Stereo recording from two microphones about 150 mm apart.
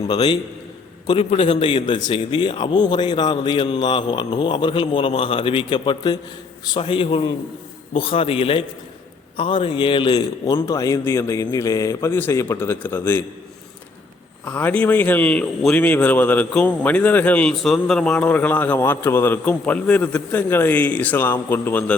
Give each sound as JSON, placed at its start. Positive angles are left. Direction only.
{"t": 0.0, "sound": "a man's voice", "side_deg": 35}
{"t": 14.4, "sound": "a man's voice", "side_deg": 10}